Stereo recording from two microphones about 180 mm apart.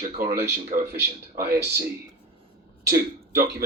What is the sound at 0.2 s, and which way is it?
Speech, 15° right (ahead or behind).